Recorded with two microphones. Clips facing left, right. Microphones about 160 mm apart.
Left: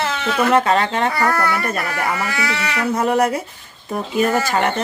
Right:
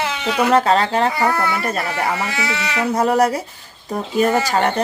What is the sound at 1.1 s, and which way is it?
Speech, 20° right (ahead or behind).